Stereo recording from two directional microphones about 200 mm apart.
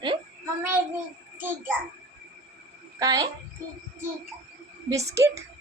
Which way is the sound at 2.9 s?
15° right (ahead or behind).